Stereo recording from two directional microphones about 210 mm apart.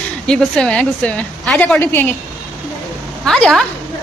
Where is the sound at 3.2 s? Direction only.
Centre (ahead or behind).